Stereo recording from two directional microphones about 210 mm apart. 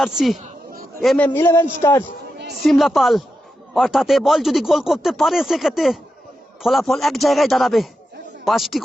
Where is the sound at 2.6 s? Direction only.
Centre (ahead or behind).